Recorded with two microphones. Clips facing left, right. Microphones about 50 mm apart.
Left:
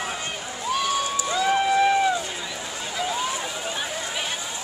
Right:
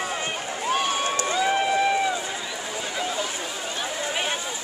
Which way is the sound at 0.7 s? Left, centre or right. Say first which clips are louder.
Even; right.